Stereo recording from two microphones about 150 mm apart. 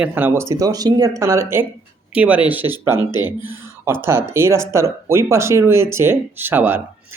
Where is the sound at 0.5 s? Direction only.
25° right (ahead or behind).